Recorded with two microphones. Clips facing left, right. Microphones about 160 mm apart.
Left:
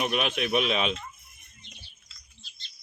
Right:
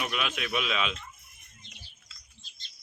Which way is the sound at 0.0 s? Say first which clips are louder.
Left 5 dB; 30° left (ahead or behind).